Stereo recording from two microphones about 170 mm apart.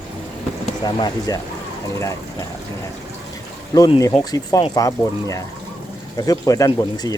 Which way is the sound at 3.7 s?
20° left (ahead or behind).